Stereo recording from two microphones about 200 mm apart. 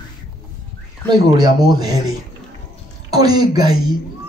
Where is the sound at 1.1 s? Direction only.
20° right (ahead or behind).